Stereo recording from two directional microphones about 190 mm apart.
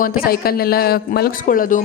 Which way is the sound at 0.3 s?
55° left (ahead or behind).